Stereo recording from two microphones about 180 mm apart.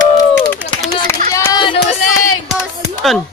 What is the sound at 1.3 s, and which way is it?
Speech, 20° left (ahead or behind).